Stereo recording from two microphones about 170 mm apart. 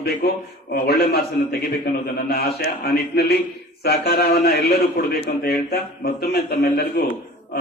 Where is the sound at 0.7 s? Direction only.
70° left (ahead or behind).